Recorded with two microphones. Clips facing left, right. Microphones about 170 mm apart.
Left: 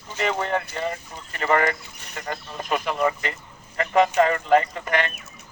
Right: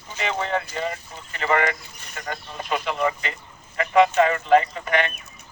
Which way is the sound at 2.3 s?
45° left (ahead or behind).